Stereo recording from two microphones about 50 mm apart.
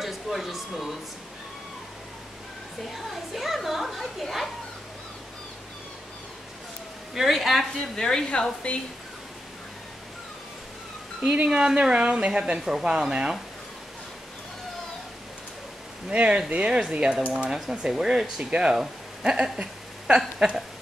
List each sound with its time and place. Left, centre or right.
0.0 s speech: centre
2.9 s a woman's voice: centre
7.2 s a woman's voice: centre
7.9 s sizzle: centre
11.4 s speech: centre
16.1 s speech: right
17.6 s speech: centre
19.6 s a sound: centre